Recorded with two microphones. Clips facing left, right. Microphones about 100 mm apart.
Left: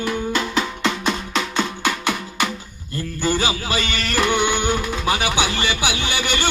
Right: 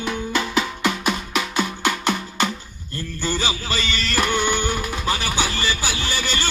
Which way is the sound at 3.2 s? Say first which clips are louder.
Left 4 dB; 15° left (ahead or behind).